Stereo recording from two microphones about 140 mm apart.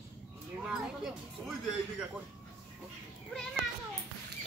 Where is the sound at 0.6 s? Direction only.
5° right (ahead or behind).